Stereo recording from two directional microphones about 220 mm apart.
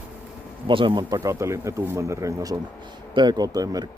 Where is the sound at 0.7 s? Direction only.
20° right (ahead or behind).